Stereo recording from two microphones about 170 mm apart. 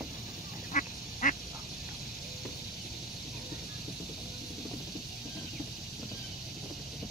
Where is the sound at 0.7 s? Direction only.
50° left (ahead or behind).